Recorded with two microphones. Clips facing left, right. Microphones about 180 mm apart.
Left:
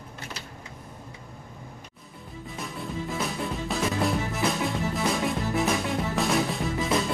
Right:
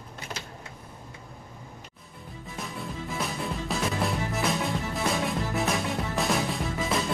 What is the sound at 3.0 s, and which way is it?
Music, centre (ahead or behind).